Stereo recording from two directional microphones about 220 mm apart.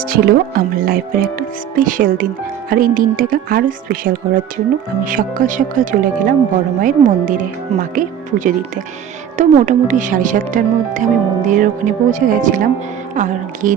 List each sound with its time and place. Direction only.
0.0 s speech: 40° right (ahead or behind)